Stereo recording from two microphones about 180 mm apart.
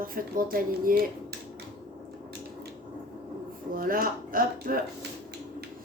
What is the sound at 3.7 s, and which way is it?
A woman's voice, 55° right (ahead or behind).